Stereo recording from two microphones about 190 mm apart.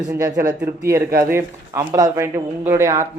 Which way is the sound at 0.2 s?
15° right (ahead or behind).